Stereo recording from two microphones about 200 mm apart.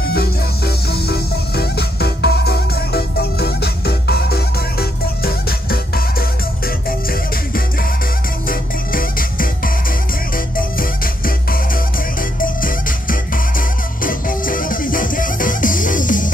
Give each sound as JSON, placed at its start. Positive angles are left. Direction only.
{"t": 0.0, "sound": "music", "side_deg": 50}
{"t": 8.5, "sound": "music", "side_deg": 45}
{"t": 12.4, "sound": "music", "side_deg": 45}